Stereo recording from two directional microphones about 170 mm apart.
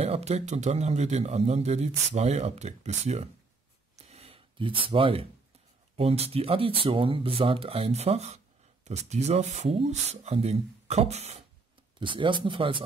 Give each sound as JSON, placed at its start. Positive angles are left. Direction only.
{"t": 0.0, "sound": "a man's voice", "side_deg": -40}
{"t": 3.9, "sound": "a sound", "side_deg": -40}
{"t": 5.9, "sound": "a man's voice", "side_deg": -35}
{"t": 12.0, "sound": "speech", "side_deg": -30}